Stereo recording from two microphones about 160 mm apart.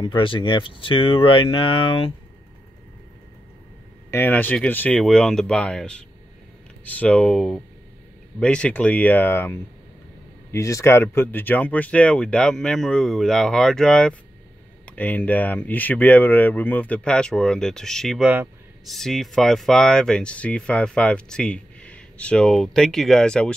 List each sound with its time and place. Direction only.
0.0 s speech: 30° left (ahead or behind)
4.1 s speech: 10° left (ahead or behind)
18.2 s speech: 10° right (ahead or behind)
18.9 s speech: centre (ahead or behind)